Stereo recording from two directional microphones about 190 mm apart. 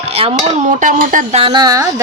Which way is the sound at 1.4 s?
25° right (ahead or behind).